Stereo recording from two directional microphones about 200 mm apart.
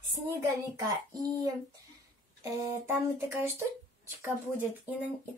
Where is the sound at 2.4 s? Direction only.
15° right (ahead or behind).